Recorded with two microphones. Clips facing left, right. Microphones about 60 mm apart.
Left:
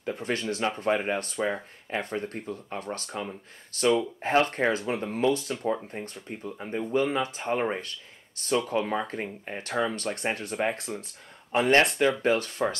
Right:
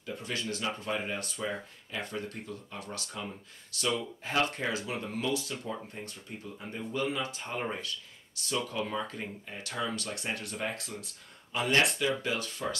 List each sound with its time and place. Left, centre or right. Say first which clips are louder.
0.0 s speech: left 7 dB; left